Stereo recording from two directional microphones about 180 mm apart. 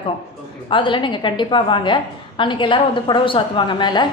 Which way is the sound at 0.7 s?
30° left (ahead or behind).